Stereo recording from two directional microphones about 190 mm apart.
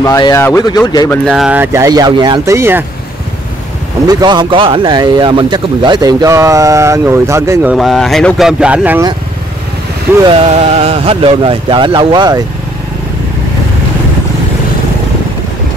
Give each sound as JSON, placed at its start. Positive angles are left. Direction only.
{"t": 0.0, "sound": "speech", "side_deg": 15}
{"t": 1.2, "sound": "speech", "side_deg": 0}
{"t": 4.1, "sound": "speech", "side_deg": -20}
{"t": 7.7, "sound": "speech", "side_deg": 0}
{"t": 10.2, "sound": "speech", "side_deg": -30}